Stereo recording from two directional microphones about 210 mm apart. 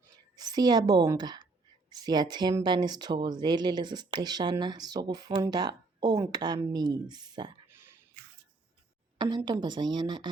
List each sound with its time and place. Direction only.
0.3 s a woman's voice: 20° right (ahead or behind)
9.1 s speech: 20° right (ahead or behind)